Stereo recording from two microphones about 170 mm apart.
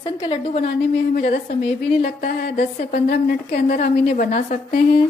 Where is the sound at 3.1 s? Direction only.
55° left (ahead or behind).